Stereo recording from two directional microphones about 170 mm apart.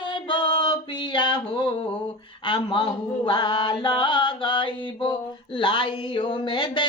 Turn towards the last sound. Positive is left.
turn(degrees=25)  # may be behind; listen again after turning